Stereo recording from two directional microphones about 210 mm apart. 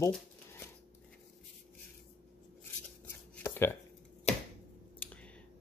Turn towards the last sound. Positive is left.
turn(degrees=5)  # may be behind; listen again after turning